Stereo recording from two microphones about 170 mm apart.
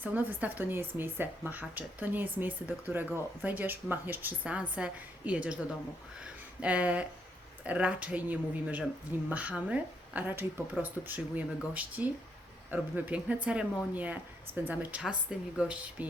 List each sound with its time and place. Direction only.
0.0 s speech: 10° right (ahead or behind)
6.6 s speech: 5° right (ahead or behind)